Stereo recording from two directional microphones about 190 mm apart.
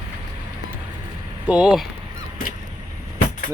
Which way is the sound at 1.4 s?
5° right (ahead or behind).